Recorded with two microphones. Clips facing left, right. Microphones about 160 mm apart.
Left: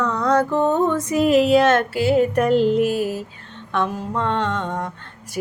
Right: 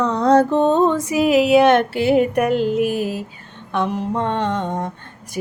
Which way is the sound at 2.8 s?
15° right (ahead or behind).